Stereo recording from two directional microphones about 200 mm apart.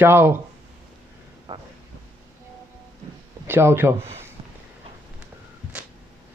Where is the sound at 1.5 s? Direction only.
20° right (ahead or behind).